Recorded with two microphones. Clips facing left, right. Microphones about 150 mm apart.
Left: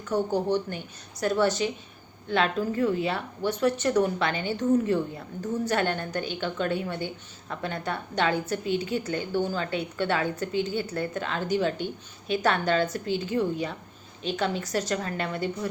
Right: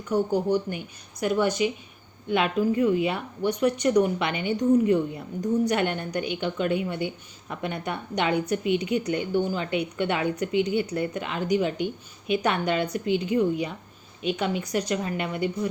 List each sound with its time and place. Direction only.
0.1 s a woman's voice: 10° right (ahead or behind)